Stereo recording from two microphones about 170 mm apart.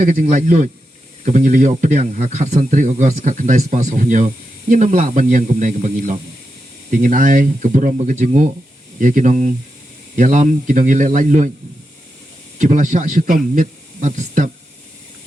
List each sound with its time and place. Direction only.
0.0 s speech: 50° right (ahead or behind)
12.5 s speech: 50° right (ahead or behind)